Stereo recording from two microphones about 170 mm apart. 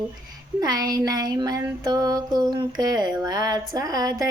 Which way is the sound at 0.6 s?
25° right (ahead or behind).